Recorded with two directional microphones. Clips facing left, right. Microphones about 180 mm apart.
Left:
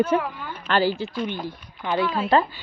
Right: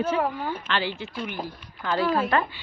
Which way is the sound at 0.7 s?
40° left (ahead or behind).